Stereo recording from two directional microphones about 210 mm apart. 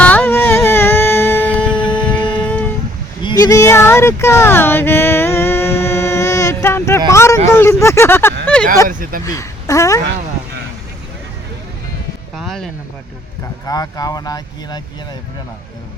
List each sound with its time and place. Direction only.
0.0 s music: 10° left (ahead or behind)
1.7 s shofar: 20° left (ahead or behind)
2.5 s a sound: 5° left (ahead or behind)
8.4 s speech: 5° left (ahead or behind)
8.9 s speech: 40° right (ahead or behind)
9.2 s speech: 15° left (ahead or behind)
12.4 s a sound: centre (ahead or behind)
13.7 s speech: 15° left (ahead or behind)